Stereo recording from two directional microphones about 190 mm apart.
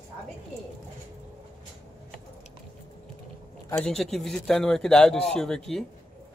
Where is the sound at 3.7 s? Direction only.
5° left (ahead or behind).